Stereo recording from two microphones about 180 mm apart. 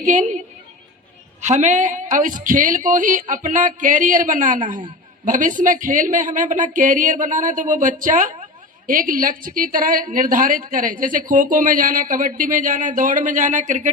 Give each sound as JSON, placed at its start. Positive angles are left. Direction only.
{"t": 0.0, "sound": "a woman's voice", "side_deg": -45}
{"t": 1.4, "sound": "a woman's voice", "side_deg": -40}